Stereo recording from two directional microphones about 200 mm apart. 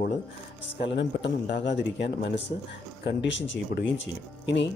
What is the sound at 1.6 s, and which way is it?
Speech, 60° left (ahead or behind).